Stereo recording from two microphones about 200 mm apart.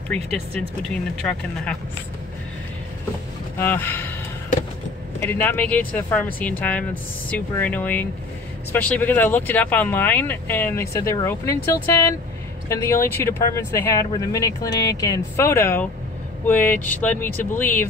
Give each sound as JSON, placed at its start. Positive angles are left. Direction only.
{"t": 0.1, "sound": "speech", "side_deg": 5}
{"t": 3.5, "sound": "speech", "side_deg": 10}
{"t": 5.2, "sound": "speech", "side_deg": 10}